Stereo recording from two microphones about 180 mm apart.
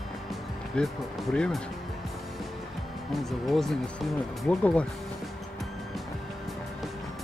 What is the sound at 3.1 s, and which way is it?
Speech, centre (ahead or behind).